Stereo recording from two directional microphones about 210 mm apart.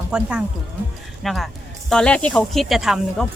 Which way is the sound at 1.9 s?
5° left (ahead or behind).